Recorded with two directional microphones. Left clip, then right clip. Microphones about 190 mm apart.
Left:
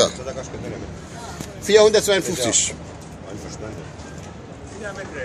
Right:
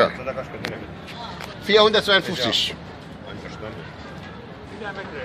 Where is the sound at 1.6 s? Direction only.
20° left (ahead or behind).